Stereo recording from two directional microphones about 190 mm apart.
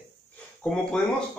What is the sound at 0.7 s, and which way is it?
Speech, 5° left (ahead or behind).